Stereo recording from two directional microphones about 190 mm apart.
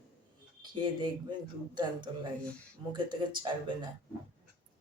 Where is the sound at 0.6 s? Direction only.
25° right (ahead or behind).